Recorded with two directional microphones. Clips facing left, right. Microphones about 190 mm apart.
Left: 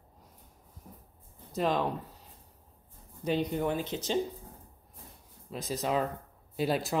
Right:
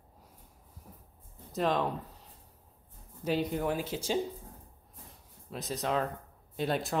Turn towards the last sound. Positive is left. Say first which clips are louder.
# left 2 dB
turn(degrees=0)  # may be behind; listen again after turning